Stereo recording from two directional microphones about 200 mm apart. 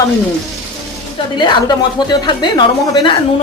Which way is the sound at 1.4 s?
20° left (ahead or behind).